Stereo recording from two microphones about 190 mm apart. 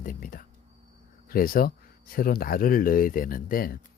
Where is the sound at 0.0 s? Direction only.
45° left (ahead or behind).